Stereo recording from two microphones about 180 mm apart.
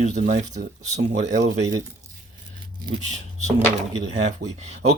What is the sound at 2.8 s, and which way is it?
Speech, 40° right (ahead or behind).